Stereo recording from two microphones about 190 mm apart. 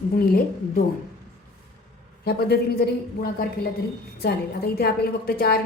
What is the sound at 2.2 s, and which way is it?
A woman's voice, 55° left (ahead or behind).